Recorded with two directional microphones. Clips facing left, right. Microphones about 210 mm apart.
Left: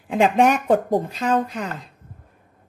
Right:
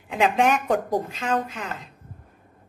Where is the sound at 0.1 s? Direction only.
35° left (ahead or behind).